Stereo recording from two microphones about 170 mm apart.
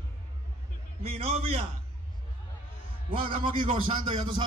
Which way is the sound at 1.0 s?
35° right (ahead or behind).